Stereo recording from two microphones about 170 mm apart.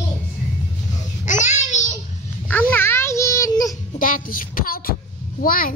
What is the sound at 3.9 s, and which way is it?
Child singing, 55° left (ahead or behind).